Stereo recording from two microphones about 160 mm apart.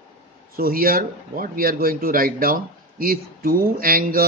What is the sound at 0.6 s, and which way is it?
A man's voice, 65° right (ahead or behind).